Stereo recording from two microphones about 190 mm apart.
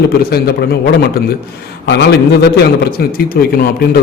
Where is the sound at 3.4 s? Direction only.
55° left (ahead or behind).